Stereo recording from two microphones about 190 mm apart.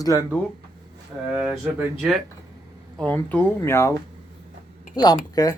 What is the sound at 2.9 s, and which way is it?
Speech, 5° left (ahead or behind).